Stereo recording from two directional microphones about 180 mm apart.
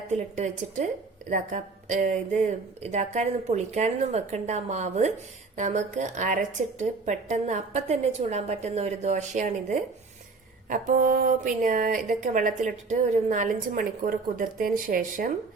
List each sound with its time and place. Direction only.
0.1 s a woman's voice: 40° right (ahead or behind)